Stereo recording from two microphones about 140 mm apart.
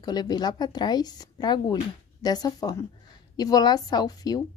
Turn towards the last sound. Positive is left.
turn(degrees=30)  # may be behind; listen again after turning